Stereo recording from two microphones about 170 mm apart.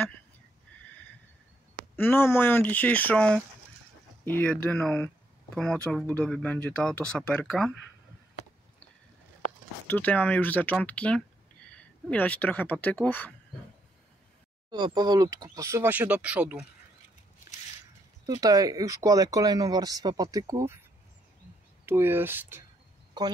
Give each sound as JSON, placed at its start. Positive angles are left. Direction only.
{"t": 2.0, "sound": "speech", "side_deg": 10}
{"t": 9.8, "sound": "speech", "side_deg": 10}
{"t": 14.7, "sound": "speech", "side_deg": -25}
{"t": 18.2, "sound": "speech", "side_deg": -20}
{"t": 21.8, "sound": "speech", "side_deg": -15}
{"t": 23.2, "sound": "speech", "side_deg": -25}